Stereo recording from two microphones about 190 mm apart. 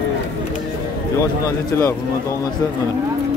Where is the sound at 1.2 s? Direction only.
15° left (ahead or behind).